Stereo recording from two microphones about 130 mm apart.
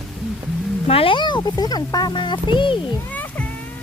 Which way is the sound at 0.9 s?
45° left (ahead or behind).